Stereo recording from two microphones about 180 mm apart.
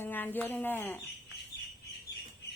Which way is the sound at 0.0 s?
10° left (ahead or behind).